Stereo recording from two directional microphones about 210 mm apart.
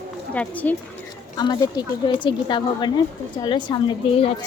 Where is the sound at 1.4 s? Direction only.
20° left (ahead or behind).